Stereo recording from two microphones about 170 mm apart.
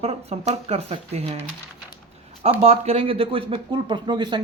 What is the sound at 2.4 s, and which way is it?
Speech, 35° right (ahead or behind).